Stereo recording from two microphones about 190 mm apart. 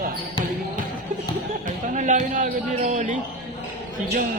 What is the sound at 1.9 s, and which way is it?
A man's voice, 40° right (ahead or behind).